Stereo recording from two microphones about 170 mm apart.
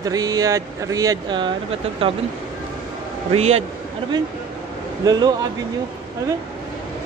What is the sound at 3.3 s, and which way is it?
Speech, 40° right (ahead or behind).